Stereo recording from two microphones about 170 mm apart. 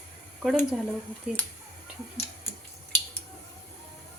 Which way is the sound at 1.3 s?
5° right (ahead or behind).